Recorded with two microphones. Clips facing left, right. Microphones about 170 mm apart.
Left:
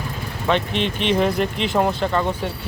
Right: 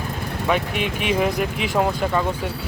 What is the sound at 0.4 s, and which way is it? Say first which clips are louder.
Speech: left 2 dB; 10° right (ahead or behind).